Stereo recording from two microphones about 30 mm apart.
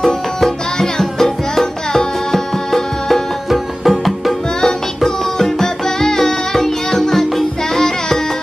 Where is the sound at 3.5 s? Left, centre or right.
Centre.